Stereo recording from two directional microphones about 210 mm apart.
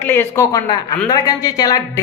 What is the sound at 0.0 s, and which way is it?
A woman's voice, 10° left (ahead or behind).